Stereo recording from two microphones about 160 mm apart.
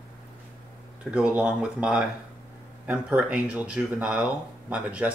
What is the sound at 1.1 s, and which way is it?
Speech, 5° right (ahead or behind).